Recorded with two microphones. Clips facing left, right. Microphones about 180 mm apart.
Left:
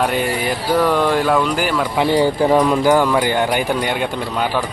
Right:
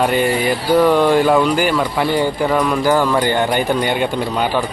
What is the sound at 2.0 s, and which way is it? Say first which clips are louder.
Speech: left 2 dB; 30° left (ahead or behind).